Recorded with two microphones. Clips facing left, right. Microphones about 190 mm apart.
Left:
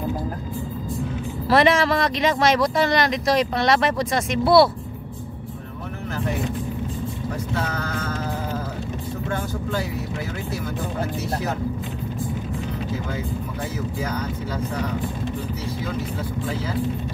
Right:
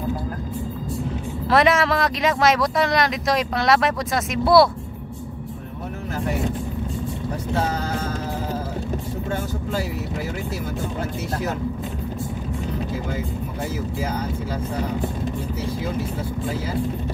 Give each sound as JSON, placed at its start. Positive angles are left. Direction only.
{"t": 1.5, "sound": "speech", "side_deg": 0}